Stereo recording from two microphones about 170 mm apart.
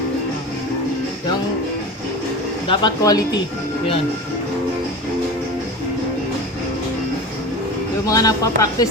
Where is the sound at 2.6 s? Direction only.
25° left (ahead or behind).